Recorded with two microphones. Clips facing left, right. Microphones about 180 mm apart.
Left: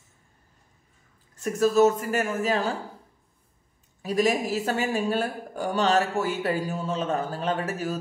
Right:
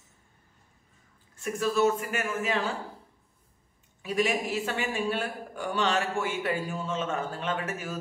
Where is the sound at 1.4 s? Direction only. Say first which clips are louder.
Left 6 dB; 40° left (ahead or behind).